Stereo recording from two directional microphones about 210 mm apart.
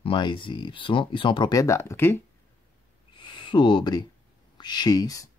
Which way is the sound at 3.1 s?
20° left (ahead or behind).